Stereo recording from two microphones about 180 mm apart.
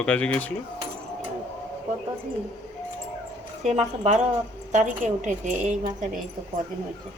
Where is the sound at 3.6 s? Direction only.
40° right (ahead or behind).